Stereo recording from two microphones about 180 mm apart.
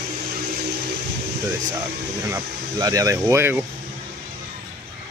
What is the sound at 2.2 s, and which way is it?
Speech, 20° right (ahead or behind).